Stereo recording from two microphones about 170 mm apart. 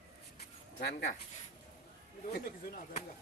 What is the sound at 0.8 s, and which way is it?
Speech, 70° left (ahead or behind).